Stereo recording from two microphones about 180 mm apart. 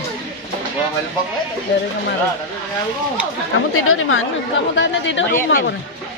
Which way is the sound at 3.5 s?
90° left.